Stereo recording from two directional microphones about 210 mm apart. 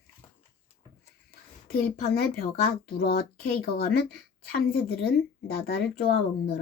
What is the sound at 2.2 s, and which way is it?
Speech, 45° left (ahead or behind).